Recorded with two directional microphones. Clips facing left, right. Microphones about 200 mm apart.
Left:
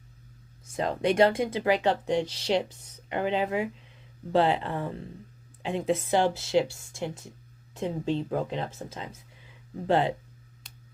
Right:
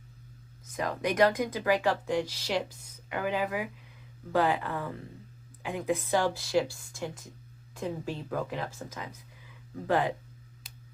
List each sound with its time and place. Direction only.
0.8 s speech: 25° left (ahead or behind)
9.5 s a sound: 20° left (ahead or behind)
10.6 s finger snapping: 5° right (ahead or behind)